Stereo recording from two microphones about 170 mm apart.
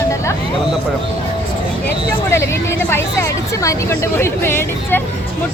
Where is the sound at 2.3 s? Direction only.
15° left (ahead or behind).